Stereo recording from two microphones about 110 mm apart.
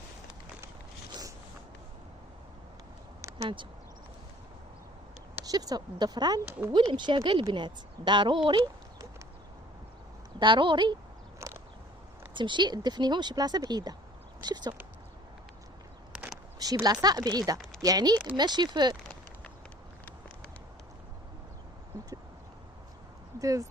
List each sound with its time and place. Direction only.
5.5 s a woman's voice: 35° right (ahead or behind)
10.4 s a woman's voice: 45° right (ahead or behind)
11.3 s a sound: 25° right (ahead or behind)
12.3 s speech: 45° right (ahead or behind)
16.8 s speech: 35° right (ahead or behind)
23.4 s speech: 30° right (ahead or behind)